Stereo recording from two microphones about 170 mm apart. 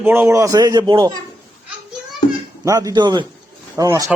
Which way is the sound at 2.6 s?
20° right (ahead or behind).